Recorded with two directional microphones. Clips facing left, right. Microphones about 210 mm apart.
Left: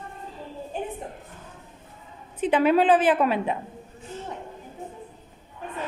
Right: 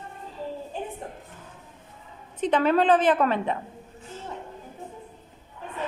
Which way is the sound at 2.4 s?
10° left (ahead or behind).